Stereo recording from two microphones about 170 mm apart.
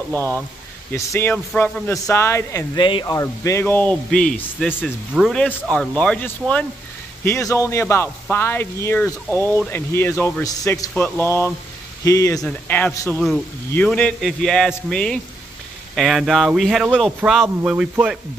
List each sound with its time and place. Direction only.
0.1 s speech: 10° left (ahead or behind); by 18.1 s 5° right (ahead or behind)